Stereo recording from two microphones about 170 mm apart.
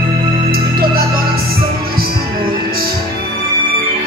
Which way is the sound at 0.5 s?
60° right (ahead or behind).